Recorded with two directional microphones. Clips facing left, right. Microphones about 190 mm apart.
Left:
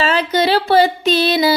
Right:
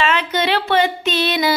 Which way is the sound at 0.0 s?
35° left (ahead or behind).